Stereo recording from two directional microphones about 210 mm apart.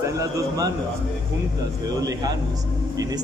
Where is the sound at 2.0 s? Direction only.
15° right (ahead or behind).